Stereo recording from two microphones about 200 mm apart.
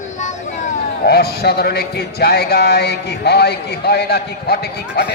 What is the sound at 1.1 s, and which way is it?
A man's voice, 50° left (ahead or behind).